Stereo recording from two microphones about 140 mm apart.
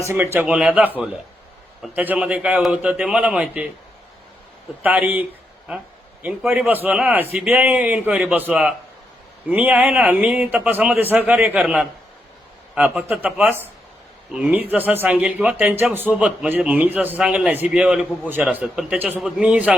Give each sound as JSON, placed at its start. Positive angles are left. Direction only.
{"t": 0.0, "sound": "speech", "side_deg": -20}
{"t": 1.9, "sound": "speech", "side_deg": -10}
{"t": 4.8, "sound": "speech", "side_deg": -10}
{"t": 6.2, "sound": "a man's voice", "side_deg": -10}